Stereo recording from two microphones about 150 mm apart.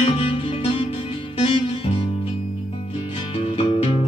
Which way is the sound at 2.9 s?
40° left (ahead or behind).